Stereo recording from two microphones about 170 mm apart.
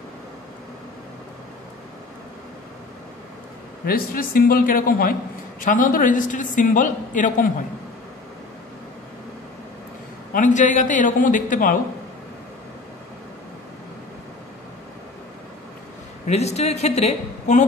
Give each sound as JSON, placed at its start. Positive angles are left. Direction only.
{"t": 3.8, "sound": "a man's voice", "side_deg": 60}
{"t": 10.3, "sound": "a woman's voice", "side_deg": 45}
{"t": 16.3, "sound": "speech", "side_deg": 40}